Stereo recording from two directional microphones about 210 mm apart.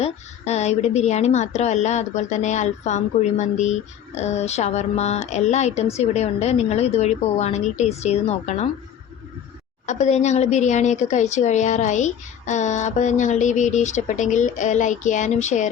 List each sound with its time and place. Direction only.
0.0 s speech: 30° left (ahead or behind)
9.8 s speech: 35° left (ahead or behind)